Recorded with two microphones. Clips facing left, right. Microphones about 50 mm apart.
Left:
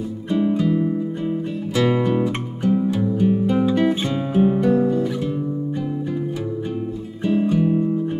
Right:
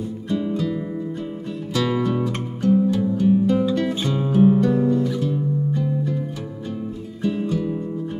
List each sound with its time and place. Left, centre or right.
0.3 s music: left
7.2 s music: left